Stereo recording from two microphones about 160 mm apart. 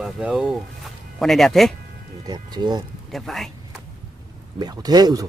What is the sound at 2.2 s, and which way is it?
Speech, 25° right (ahead or behind).